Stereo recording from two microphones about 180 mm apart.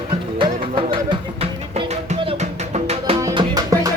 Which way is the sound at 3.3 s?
25° right (ahead or behind).